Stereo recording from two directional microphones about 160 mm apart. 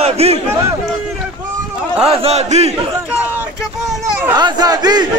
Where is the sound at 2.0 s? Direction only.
40° right (ahead or behind).